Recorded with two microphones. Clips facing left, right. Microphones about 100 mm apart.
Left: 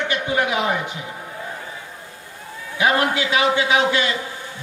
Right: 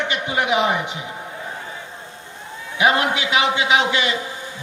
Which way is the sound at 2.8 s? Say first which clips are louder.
Right 1 dB; 20° right (ahead or behind).